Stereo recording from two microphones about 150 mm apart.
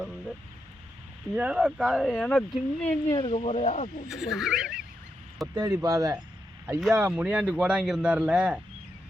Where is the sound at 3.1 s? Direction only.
40° left (ahead or behind).